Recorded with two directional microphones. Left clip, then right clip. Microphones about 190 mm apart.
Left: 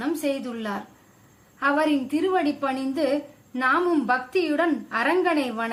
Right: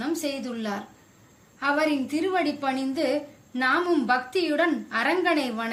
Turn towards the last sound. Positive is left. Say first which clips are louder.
# left 1 dB
turn(degrees=40)  # may be behind; listen again after turning